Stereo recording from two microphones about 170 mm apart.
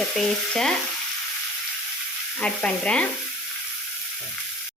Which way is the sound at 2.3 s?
5° left (ahead or behind).